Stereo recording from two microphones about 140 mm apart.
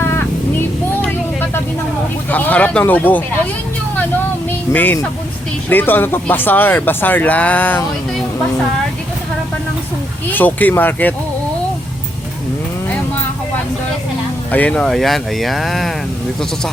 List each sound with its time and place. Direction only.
1.0 s vehicle: 15° left (ahead or behind)
2.3 s speech: 10° left (ahead or behind)
4.7 s speech: 15° left (ahead or behind)
10.2 s speech: 10° left (ahead or behind)
14.5 s speech: 10° left (ahead or behind)